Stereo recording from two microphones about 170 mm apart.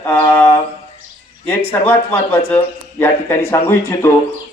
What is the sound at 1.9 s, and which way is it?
Speech, 10° left (ahead or behind).